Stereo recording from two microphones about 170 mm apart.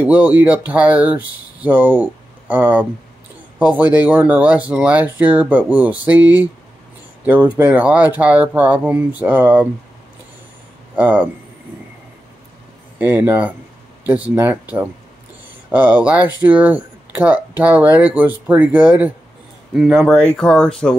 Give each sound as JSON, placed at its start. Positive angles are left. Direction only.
{"t": 0.0, "sound": "speech", "side_deg": -10}
{"t": 11.0, "sound": "speech", "side_deg": -10}
{"t": 13.0, "sound": "speech", "side_deg": -10}